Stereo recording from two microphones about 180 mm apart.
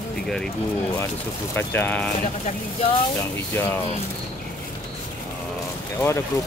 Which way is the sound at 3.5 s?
15° left (ahead or behind).